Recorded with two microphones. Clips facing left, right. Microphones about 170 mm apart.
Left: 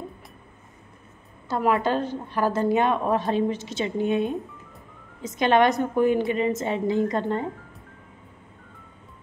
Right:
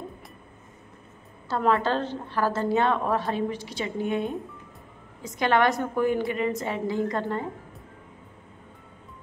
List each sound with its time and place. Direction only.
1.5 s a woman's voice: 15° left (ahead or behind)